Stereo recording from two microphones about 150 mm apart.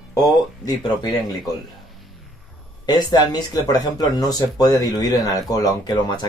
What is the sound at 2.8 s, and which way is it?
Speech, 30° left (ahead or behind).